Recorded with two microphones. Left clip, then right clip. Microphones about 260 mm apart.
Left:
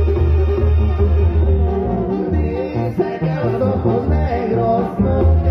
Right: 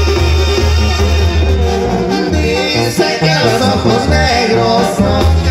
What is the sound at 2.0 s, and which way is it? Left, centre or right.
Music, centre.